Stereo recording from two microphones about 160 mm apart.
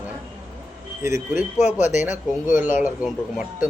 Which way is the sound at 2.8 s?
5° right (ahead or behind).